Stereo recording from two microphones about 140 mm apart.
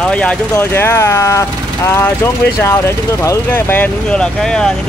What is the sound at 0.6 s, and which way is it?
Speech, 20° left (ahead or behind).